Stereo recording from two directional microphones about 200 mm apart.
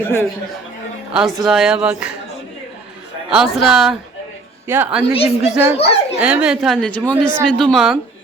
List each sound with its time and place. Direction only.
0.0 s speech: 10° left (ahead or behind)
1.1 s speech: centre (ahead or behind)
3.2 s a woman's voice: centre (ahead or behind)
5.0 s a woman's voice: 30° left (ahead or behind)
5.7 s a sound: 30° left (ahead or behind)
6.1 s speech: 5° right (ahead or behind)